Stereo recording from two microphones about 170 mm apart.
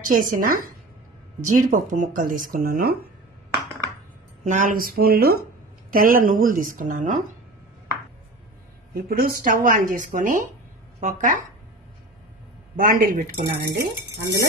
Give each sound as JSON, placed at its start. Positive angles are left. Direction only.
{"t": 0.0, "sound": "speech", "side_deg": -50}
{"t": 4.5, "sound": "speech", "side_deg": -50}
{"t": 8.9, "sound": "speech", "side_deg": -60}
{"t": 12.7, "sound": "speech", "side_deg": -60}
{"t": 13.7, "sound": "stir", "side_deg": -80}